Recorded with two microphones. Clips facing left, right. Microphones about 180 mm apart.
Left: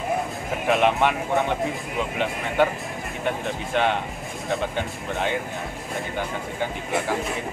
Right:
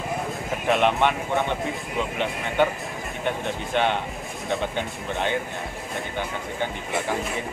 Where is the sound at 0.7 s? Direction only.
Centre (ahead or behind).